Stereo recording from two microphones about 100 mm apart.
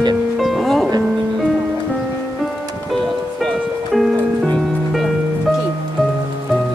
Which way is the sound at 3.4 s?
Centre (ahead or behind).